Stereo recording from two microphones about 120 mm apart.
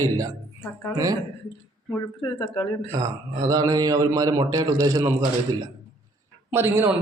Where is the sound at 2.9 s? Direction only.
35° right (ahead or behind).